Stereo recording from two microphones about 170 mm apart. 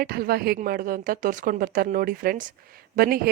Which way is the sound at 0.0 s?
65° right (ahead or behind).